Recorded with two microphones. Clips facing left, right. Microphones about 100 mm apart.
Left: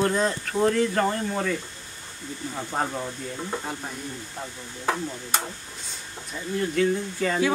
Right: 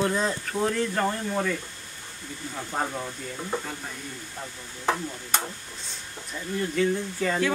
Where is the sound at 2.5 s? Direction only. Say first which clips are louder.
Left 1 dB; 10° left (ahead or behind).